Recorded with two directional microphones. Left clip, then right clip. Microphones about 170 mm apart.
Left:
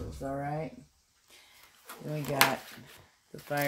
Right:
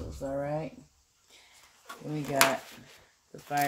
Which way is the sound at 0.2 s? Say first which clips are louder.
Right 2 dB; 30° left (ahead or behind).